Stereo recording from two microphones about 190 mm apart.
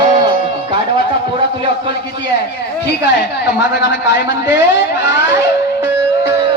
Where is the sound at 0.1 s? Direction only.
25° right (ahead or behind).